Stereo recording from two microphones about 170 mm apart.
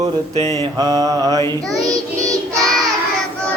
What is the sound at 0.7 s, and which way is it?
Mantra, 20° right (ahead or behind).